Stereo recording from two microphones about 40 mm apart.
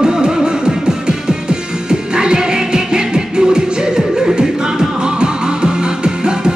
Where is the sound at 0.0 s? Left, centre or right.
Centre.